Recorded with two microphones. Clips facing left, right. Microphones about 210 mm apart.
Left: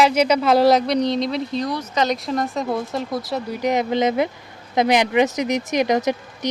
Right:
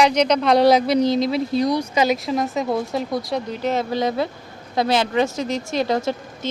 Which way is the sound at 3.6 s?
15° left (ahead or behind).